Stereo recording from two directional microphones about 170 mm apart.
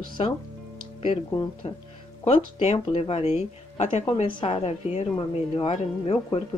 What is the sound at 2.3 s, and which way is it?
A woman's voice, 40° left (ahead or behind).